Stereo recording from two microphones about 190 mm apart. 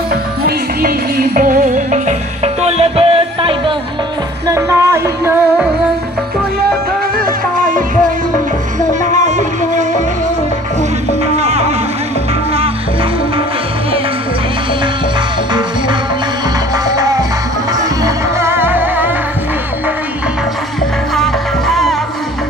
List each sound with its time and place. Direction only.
0.1 s music: 55° right (ahead or behind); by 3.7 s 30° right (ahead or behind)
4.5 s music: 15° right (ahead or behind)
7.2 s music: 45° right (ahead or behind)
9.0 s music: 40° right (ahead or behind)
11.3 s music: 35° right (ahead or behind)
16.9 s music: 20° right (ahead or behind)
21.1 s music: centre (ahead or behind)